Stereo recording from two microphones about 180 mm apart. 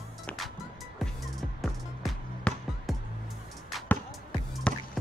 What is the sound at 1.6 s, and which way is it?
Music, 5° left (ahead or behind).